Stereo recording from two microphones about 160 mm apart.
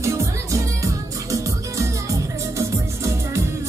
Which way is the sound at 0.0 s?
15° right (ahead or behind).